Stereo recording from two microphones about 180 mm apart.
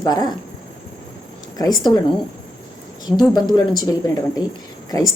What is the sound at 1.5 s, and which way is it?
Speech, 20° left (ahead or behind).